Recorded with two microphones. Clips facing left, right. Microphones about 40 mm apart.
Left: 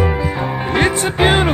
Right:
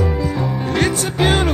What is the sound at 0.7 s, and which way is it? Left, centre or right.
Music, left.